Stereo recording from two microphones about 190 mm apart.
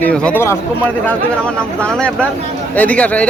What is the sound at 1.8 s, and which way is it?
A man's voice, 5° left (ahead or behind).